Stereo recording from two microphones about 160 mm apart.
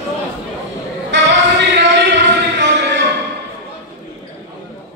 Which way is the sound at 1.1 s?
90° right.